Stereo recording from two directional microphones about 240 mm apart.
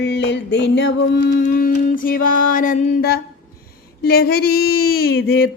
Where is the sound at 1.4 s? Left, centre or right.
Left.